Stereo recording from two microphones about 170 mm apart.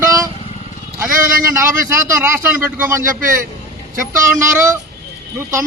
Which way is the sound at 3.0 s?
50° right (ahead or behind).